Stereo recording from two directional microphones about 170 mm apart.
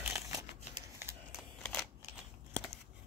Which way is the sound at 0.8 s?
15° right (ahead or behind).